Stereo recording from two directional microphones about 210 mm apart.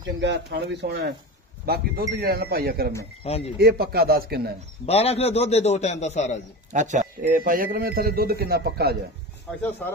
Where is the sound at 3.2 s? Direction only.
30° left (ahead or behind).